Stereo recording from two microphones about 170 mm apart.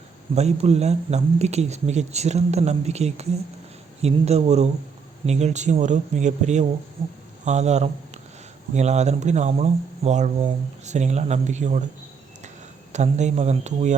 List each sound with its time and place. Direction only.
0.3 s speech: 40° right (ahead or behind)
12.9 s speech: 45° right (ahead or behind)